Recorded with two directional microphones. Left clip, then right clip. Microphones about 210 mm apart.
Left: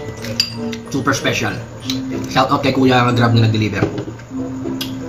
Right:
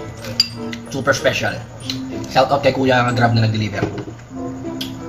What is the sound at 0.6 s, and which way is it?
Speech, 15° right (ahead or behind).